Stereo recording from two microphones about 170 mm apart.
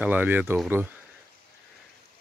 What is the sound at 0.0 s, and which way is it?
Speech, 10° right (ahead or behind).